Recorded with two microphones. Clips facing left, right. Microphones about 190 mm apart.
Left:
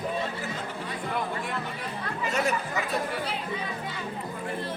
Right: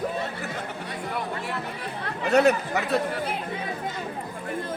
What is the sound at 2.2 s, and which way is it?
Speech, 65° right (ahead or behind).